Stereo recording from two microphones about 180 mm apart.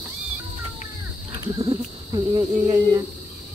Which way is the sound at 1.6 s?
35° right (ahead or behind).